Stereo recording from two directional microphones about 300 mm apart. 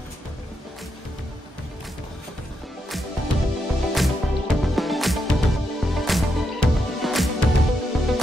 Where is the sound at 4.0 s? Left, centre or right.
Centre.